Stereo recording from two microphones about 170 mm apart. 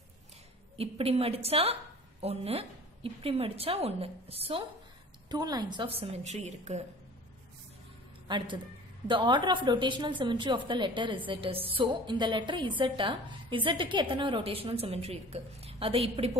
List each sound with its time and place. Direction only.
0.7 s a woman's voice: 35° right (ahead or behind)
5.3 s a woman's voice: 25° right (ahead or behind); by 6.8 s 40° right (ahead or behind)
8.3 s a woman's voice: 25° right (ahead or behind)